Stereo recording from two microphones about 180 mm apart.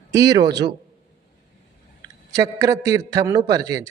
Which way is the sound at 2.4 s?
20° right (ahead or behind).